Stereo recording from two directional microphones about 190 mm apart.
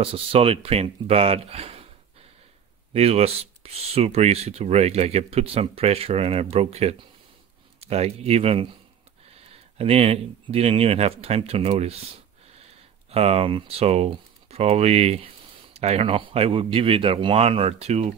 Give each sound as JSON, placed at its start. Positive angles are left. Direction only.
{"t": 0.0, "sound": "speech", "side_deg": -30}
{"t": 2.9, "sound": "speech", "side_deg": -30}